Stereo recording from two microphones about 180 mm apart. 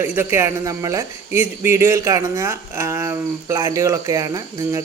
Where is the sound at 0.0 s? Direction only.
10° right (ahead or behind).